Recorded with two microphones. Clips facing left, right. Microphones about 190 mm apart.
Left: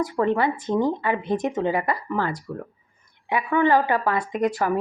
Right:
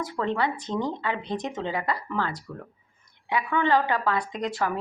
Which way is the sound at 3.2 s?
50° left (ahead or behind).